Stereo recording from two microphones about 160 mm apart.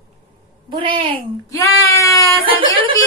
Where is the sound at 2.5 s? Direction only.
35° right (ahead or behind).